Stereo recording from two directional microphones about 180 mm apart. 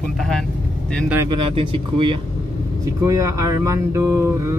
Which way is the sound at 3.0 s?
15° right (ahead or behind).